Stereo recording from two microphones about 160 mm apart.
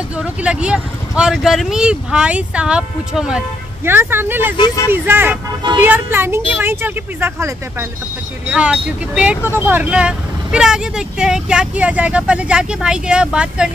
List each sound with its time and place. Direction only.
0.2 s speech: 5° right (ahead or behind)
4.6 s speech: 25° left (ahead or behind)
4.9 s speech: 15° right (ahead or behind)